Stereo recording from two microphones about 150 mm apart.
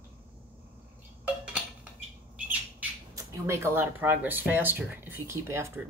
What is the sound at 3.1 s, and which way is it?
Speech, 20° right (ahead or behind).